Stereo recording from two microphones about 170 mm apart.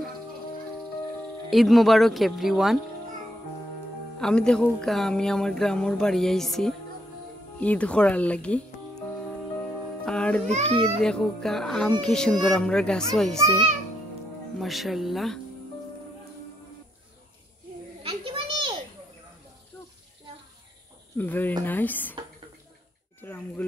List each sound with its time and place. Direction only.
1.5 s speech: centre (ahead or behind)
4.2 s speech: 5° left (ahead or behind)
10.0 s speech: 5° left (ahead or behind)
10.5 s speech: 40° right (ahead or behind)
11.0 s speech: 5° left (ahead or behind)
14.6 s speech: centre (ahead or behind)
18.0 s children playing: 30° right (ahead or behind)
21.2 s speech: 10° left (ahead or behind)
23.2 s a sound: 10° left (ahead or behind)